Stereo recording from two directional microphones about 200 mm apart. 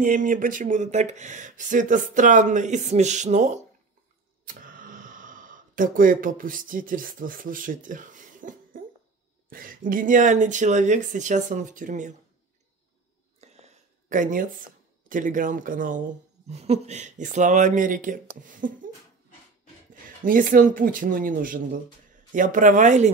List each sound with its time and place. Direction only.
0.0 s speech: 40° right (ahead or behind)
4.5 s a sound: 45° right (ahead or behind)
9.5 s speech: 45° right (ahead or behind)
13.4 s a sound: 35° right (ahead or behind)
15.0 s speech: 40° right (ahead or behind)
19.9 s speech: 40° right (ahead or behind)